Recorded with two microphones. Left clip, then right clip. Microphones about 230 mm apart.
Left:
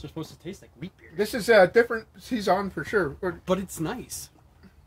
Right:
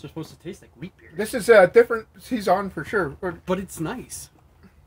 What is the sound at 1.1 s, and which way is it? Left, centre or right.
Speech, centre.